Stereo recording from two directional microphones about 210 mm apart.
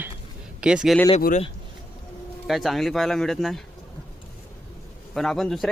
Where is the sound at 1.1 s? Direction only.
35° left (ahead or behind).